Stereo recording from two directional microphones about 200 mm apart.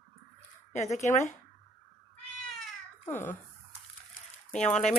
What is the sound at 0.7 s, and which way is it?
Speech, 35° left (ahead or behind).